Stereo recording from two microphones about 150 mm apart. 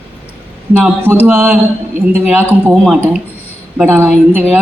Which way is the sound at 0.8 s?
15° right (ahead or behind).